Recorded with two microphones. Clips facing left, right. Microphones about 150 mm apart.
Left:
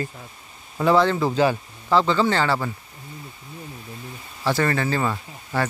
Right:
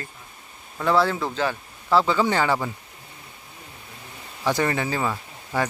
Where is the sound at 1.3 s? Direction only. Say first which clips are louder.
Left 6 dB; 10° left (ahead or behind).